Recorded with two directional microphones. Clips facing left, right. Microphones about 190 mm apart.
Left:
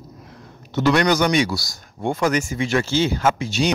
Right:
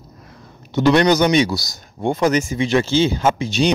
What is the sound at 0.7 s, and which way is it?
Speech, 20° right (ahead or behind).